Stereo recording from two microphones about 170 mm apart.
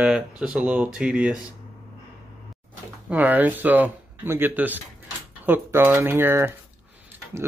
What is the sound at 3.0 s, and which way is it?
Speech, 10° right (ahead or behind).